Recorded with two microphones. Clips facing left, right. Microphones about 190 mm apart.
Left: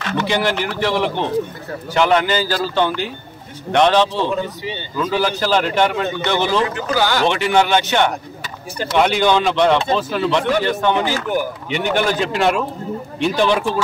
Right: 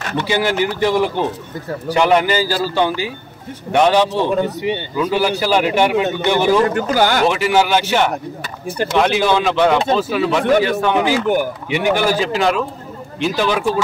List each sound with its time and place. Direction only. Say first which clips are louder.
0.3 s speech: right 4 dB; 10° right (ahead or behind)
6.6 s speech: right 4 dB; 50° right (ahead or behind)
7.2 s a man's voice: right 1 dB; 5° right (ahead or behind)